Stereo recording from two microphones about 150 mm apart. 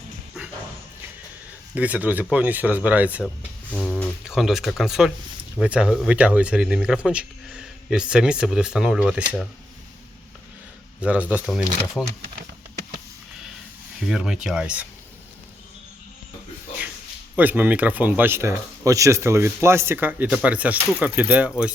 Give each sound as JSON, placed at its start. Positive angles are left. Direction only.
{"t": 1.7, "sound": "speech", "side_deg": -10}
{"t": 3.7, "sound": "speech", "side_deg": 5}
{"t": 11.0, "sound": "speech", "side_deg": -10}
{"t": 12.0, "sound": "speech", "side_deg": 10}
{"t": 14.1, "sound": "speech", "side_deg": -5}
{"t": 17.3, "sound": "speech", "side_deg": -10}